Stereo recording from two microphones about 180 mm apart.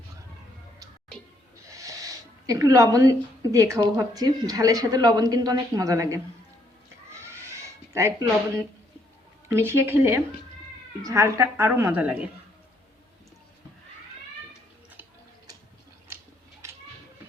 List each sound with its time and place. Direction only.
1.6 s speech: 20° right (ahead or behind)
7.3 s a sound: 15° right (ahead or behind)
9.5 s a woman's voice: 15° right (ahead or behind)